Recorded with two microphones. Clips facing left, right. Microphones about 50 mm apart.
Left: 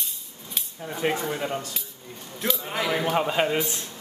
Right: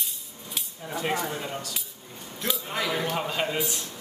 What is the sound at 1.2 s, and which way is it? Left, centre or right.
Speech, left.